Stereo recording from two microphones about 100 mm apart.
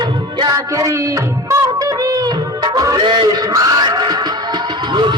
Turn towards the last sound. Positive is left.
turn(degrees=-50)  # may be behind; listen again after turning